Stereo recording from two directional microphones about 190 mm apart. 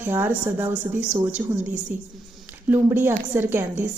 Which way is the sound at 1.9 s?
45° right (ahead or behind).